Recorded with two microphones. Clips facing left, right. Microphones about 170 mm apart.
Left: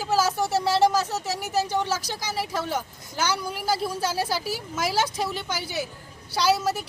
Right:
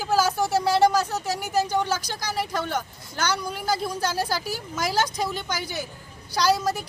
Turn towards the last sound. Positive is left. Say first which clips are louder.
# even
turn(degrees=5)  # may be behind; listen again after turning